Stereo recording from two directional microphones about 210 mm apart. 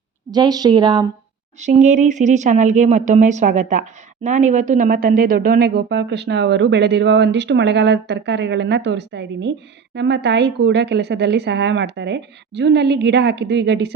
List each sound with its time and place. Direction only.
0.3 s speech: 20° right (ahead or behind)
1.6 s a woman's voice: 35° right (ahead or behind); by 13.9 s 55° right (ahead or behind)